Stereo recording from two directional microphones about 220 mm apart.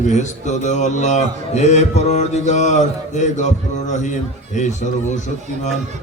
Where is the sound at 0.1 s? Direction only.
30° left (ahead or behind).